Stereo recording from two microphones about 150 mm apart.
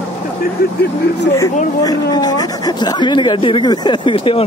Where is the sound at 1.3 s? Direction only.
25° left (ahead or behind).